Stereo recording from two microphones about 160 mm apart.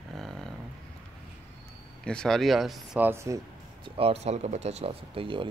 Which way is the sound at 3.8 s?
40° right (ahead or behind).